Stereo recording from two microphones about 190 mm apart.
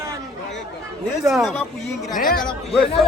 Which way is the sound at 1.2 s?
Centre (ahead or behind).